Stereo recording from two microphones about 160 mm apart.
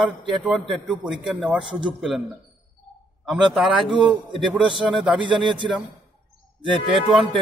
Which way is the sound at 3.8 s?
30° right (ahead or behind).